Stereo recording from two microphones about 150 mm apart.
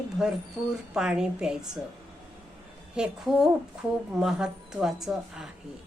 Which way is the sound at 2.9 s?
5° right (ahead or behind).